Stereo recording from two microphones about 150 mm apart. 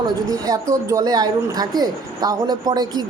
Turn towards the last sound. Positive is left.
turn(degrees=-25)  # may be behind; listen again after turning